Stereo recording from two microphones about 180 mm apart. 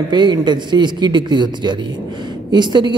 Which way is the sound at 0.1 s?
25° right (ahead or behind).